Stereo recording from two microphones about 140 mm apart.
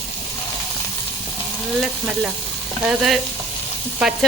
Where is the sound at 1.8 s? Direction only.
5° right (ahead or behind).